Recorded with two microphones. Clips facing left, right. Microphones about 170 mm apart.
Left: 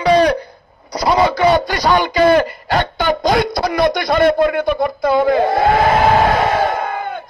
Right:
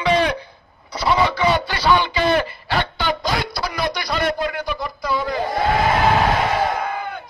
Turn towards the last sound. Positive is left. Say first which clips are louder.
# left 3 dB
turn(degrees=50)  # may be behind; listen again after turning